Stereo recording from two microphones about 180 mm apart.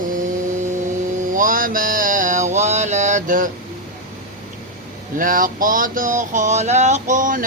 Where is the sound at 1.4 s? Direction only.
50° right (ahead or behind).